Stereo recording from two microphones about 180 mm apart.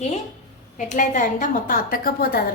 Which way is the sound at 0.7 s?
45° left (ahead or behind).